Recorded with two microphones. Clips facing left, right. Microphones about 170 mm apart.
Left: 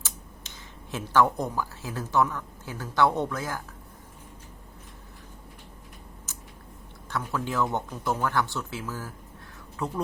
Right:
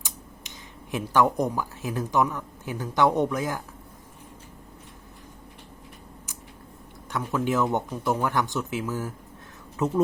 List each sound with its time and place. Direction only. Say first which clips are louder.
0.0 s speech: right 1 dB; 15° right (ahead or behind)
7.1 s speech: right 5 dB; 15° right (ahead or behind)